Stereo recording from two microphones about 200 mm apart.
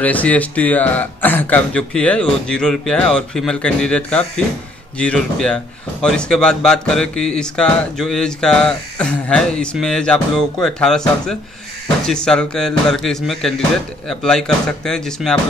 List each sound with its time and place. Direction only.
0.0 s speech: 5° left (ahead or behind)